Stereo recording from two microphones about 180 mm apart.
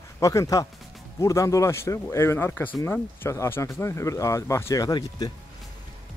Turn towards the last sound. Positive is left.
turn(degrees=20)  # may be behind; listen again after turning